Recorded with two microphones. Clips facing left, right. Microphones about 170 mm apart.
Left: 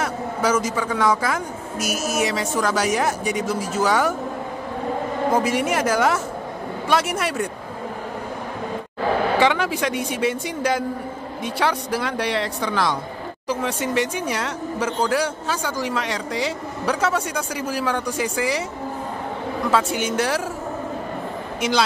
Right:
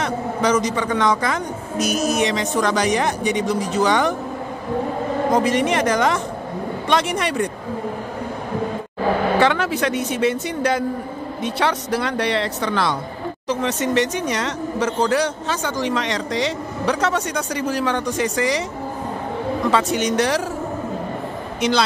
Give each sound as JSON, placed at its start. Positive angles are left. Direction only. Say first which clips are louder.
{"t": 0.0, "sound": "speech", "louder": "right 2 dB", "side_deg": 5}
{"t": 5.3, "sound": "speech", "louder": "right 2 dB", "side_deg": 5}
{"t": 9.4, "sound": "speech", "louder": "right 1 dB", "side_deg": 10}
{"t": 19.7, "sound": "speech", "louder": "right 1 dB", "side_deg": 5}
{"t": 21.5, "sound": "speech", "louder": "right 2 dB", "side_deg": 10}